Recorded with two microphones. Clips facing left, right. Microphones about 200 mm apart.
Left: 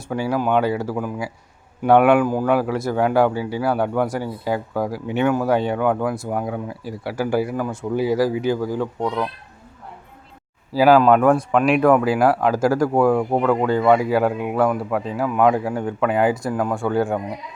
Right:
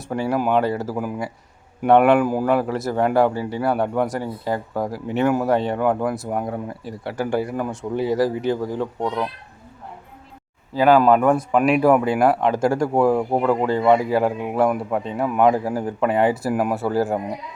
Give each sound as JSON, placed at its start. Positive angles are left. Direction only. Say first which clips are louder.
{"t": 0.0, "sound": "speech", "louder": "even", "side_deg": 0}
{"t": 2.2, "sound": "speech", "louder": "even", "side_deg": -10}
{"t": 2.5, "sound": "speech", "louder": "left 1 dB", "side_deg": 0}
{"t": 10.8, "sound": "speech", "louder": "left 1 dB", "side_deg": 5}
{"t": 12.2, "sound": "speech", "louder": "left 1 dB", "side_deg": 5}